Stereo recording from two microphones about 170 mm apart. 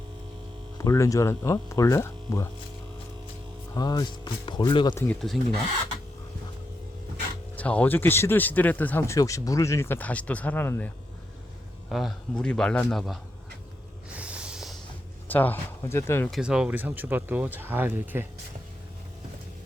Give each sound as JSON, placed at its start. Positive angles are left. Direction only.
{"t": 0.8, "sound": "speech", "side_deg": 20}
{"t": 3.8, "sound": "speech", "side_deg": 25}
{"t": 4.9, "sound": "a man's voice", "side_deg": 5}
{"t": 7.5, "sound": "speech", "side_deg": 10}
{"t": 11.9, "sound": "a man's voice", "side_deg": 0}
{"t": 14.1, "sound": "a sound", "side_deg": -5}
{"t": 15.3, "sound": "speech", "side_deg": 10}
{"t": 16.3, "sound": "speech", "side_deg": -5}